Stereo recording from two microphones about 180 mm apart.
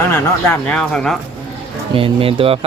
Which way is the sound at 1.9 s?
30° right (ahead or behind).